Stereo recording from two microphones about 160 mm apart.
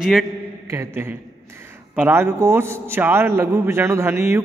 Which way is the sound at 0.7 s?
15° right (ahead or behind).